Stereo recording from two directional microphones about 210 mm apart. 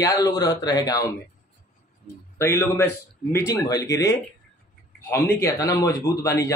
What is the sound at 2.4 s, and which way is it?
Speech, 10° left (ahead or behind).